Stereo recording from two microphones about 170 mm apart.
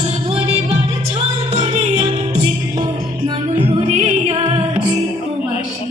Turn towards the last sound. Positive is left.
turn(degrees=-35)  # may be behind; listen again after turning